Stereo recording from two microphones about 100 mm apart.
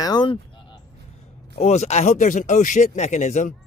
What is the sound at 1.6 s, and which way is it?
Speech, 90° left.